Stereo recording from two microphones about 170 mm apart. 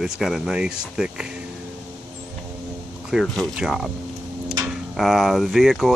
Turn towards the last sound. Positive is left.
turn(degrees=0)  # may be behind; listen again after turning